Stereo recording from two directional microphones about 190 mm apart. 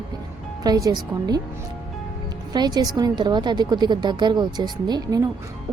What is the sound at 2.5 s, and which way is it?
A woman's voice, 20° right (ahead or behind).